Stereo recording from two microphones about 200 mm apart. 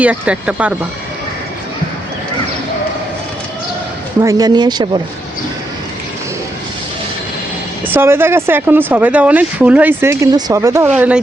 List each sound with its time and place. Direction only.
0.0 s speech: 5° right (ahead or behind)
4.2 s speech: 20° right (ahead or behind)
7.9 s speech: 10° right (ahead or behind)